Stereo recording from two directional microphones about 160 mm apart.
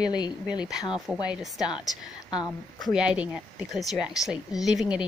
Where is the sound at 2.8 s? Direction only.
5° right (ahead or behind).